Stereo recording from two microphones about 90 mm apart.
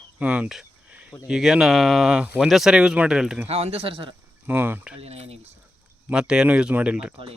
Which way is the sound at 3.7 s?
90° right.